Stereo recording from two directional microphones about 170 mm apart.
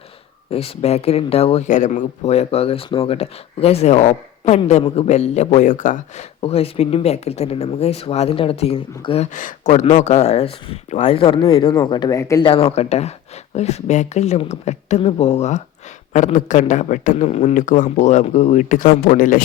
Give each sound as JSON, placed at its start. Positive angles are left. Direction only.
{"t": 0.5, "sound": "speech", "side_deg": 35}
{"t": 6.4, "sound": "speech", "side_deg": 35}
{"t": 12.5, "sound": "speech", "side_deg": 35}